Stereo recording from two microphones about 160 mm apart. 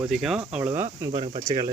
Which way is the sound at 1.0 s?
25° right (ahead or behind).